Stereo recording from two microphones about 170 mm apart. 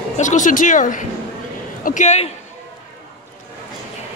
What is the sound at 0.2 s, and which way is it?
A man's voice, 45° left (ahead or behind).